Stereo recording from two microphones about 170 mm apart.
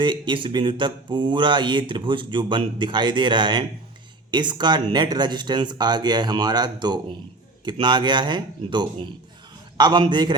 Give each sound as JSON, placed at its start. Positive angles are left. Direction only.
{"t": 0.0, "sound": "speech", "side_deg": -30}